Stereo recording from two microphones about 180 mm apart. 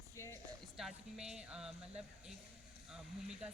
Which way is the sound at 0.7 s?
5° right (ahead or behind).